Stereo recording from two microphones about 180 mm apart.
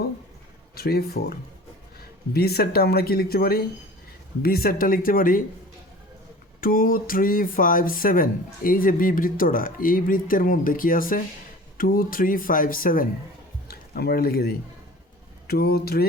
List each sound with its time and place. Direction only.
0.8 s speech: 60° left (ahead or behind)
6.6 s speech: 50° left (ahead or behind)